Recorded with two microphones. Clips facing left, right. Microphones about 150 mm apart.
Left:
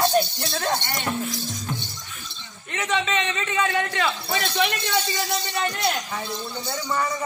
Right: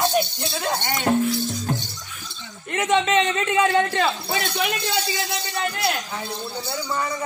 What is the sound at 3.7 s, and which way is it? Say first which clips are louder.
Speech: right 4 dB; 30° right (ahead or behind).